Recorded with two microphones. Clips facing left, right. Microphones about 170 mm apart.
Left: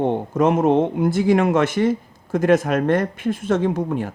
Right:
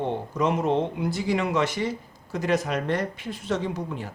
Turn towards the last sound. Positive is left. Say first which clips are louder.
# left 9 dB
turn(degrees=50)  # may be behind; listen again after turning